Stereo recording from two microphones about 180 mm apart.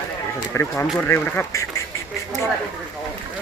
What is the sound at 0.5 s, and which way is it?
Speech, 15° left (ahead or behind).